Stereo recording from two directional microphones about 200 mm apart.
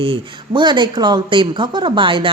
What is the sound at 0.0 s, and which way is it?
Speech, 25° right (ahead or behind).